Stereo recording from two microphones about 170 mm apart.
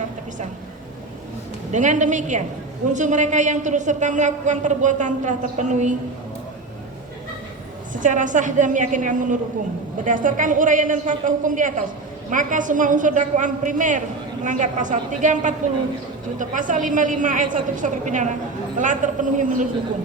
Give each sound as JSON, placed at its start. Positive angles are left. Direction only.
{"t": 1.7, "sound": "a woman's voice", "side_deg": -45}
{"t": 7.9, "sound": "a woman's voice", "side_deg": -50}